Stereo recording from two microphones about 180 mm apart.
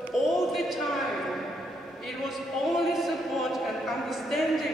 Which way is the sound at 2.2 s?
Centre (ahead or behind).